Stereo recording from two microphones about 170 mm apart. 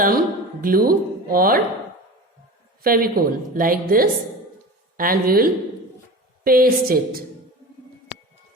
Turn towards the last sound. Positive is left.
turn(degrees=-60)  # may be behind; listen again after turning